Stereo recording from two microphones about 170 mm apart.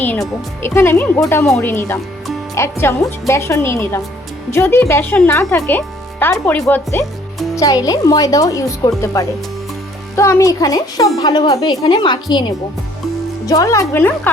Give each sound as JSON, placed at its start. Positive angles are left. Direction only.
{"t": 0.0, "sound": "speech", "side_deg": 10}
{"t": 7.0, "sound": "music", "side_deg": 0}
{"t": 7.5, "sound": "speech", "side_deg": 20}